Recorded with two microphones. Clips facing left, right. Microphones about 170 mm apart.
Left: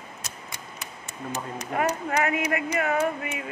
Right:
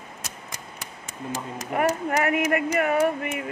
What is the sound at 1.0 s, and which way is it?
Speech, 90° right.